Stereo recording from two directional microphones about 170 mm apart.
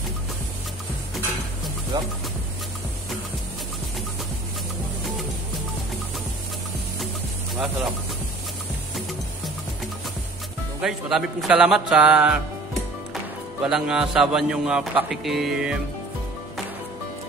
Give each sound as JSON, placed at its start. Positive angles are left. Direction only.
{"t": 1.9, "sound": "speech", "side_deg": -25}
{"t": 10.8, "sound": "speech", "side_deg": -5}